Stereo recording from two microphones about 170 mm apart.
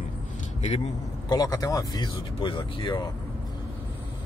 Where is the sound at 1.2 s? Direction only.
20° left (ahead or behind).